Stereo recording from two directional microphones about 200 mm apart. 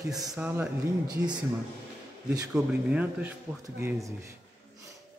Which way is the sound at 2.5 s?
5° right (ahead or behind).